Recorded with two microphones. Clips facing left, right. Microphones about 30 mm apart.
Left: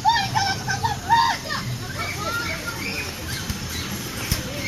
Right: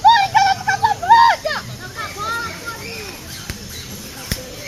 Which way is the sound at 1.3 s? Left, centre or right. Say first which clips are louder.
Right 7 dB; right.